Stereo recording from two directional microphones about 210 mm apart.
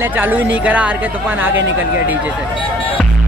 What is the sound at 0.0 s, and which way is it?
Speech, 10° right (ahead or behind).